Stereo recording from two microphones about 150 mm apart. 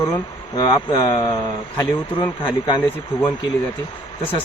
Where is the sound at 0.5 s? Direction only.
25° left (ahead or behind).